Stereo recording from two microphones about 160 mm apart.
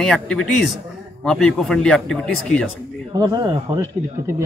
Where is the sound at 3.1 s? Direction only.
25° right (ahead or behind).